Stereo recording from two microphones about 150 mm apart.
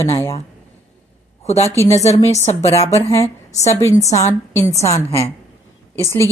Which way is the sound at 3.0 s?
20° left (ahead or behind).